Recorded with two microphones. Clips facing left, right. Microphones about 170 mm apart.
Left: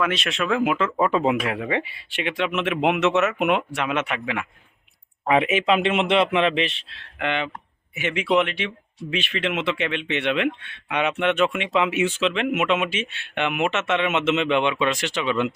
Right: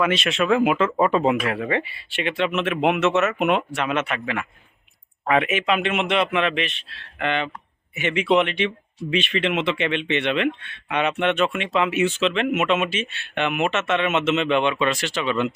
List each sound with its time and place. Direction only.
0.0 s speech: centre (ahead or behind)
1.2 s speech: 10° left (ahead or behind)
5.4 s a man's voice: 30° left (ahead or behind)
6.9 s speech: 15° left (ahead or behind)